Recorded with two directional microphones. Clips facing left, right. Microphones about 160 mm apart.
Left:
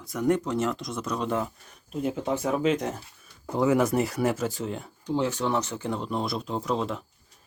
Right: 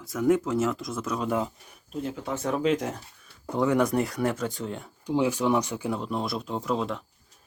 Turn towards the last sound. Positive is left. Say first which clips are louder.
# even
turn(degrees=0)  # may be behind; listen again after turning